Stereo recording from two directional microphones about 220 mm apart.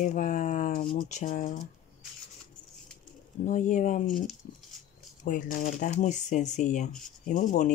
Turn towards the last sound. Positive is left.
turn(degrees=35)  # may be behind; listen again after turning